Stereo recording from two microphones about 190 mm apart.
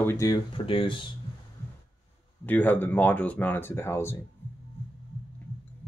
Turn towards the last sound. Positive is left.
turn(degrees=10)  # may be behind; listen again after turning